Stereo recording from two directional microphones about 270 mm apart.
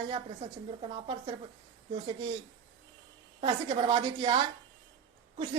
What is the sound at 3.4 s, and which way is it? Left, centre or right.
A woman's voice, centre.